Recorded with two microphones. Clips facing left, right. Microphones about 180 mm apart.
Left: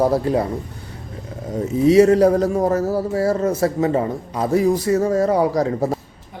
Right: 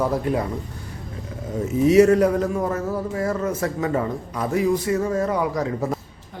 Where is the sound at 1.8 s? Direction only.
30° left (ahead or behind).